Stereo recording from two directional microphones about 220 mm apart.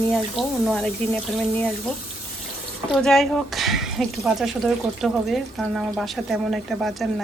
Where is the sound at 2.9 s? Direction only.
Centre (ahead or behind).